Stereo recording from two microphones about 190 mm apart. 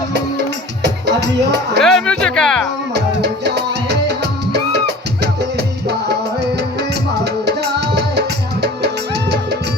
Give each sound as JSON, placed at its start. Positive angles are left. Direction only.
{"t": 0.8, "sound": "music", "side_deg": -60}
{"t": 1.8, "sound": "speech", "side_deg": 5}
{"t": 2.9, "sound": "music", "side_deg": -60}